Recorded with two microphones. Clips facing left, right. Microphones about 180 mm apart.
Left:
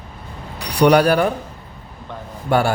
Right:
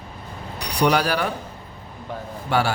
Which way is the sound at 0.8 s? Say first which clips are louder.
Left 7 dB; 55° left (ahead or behind).